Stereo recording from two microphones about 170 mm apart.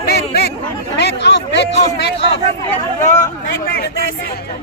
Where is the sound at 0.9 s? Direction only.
90° left.